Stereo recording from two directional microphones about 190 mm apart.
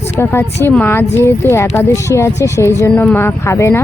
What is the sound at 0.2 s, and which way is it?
Speech, 15° left (ahead or behind).